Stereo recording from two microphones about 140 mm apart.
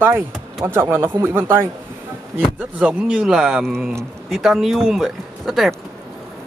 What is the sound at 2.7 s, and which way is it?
Speech, 10° right (ahead or behind).